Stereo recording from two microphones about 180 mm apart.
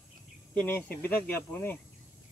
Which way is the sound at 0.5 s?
10° left (ahead or behind).